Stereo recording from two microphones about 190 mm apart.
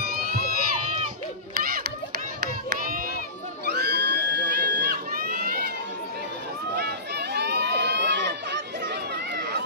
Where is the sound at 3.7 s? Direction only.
65° right (ahead or behind).